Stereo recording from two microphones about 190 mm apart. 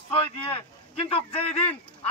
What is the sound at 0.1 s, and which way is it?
A man's voice, 30° left (ahead or behind).